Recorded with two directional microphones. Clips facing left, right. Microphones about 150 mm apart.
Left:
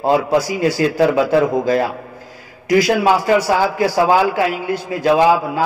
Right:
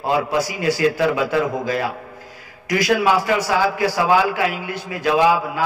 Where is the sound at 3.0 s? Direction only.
35° left (ahead or behind).